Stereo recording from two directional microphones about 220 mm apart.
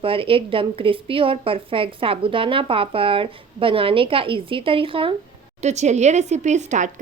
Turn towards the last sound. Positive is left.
turn(degrees=-35)  # may be behind; listen again after turning